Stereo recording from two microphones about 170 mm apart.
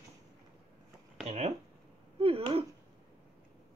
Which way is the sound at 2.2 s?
35° right (ahead or behind).